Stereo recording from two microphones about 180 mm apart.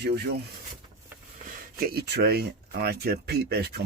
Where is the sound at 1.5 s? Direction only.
60° right (ahead or behind).